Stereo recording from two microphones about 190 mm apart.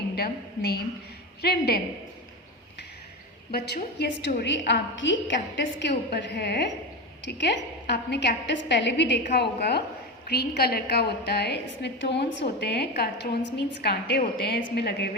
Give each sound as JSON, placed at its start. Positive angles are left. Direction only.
{"t": 0.2, "sound": "a woman's voice", "side_deg": 55}
{"t": 3.5, "sound": "a woman's voice", "side_deg": 55}
{"t": 5.8, "sound": "a woman's voice", "side_deg": 65}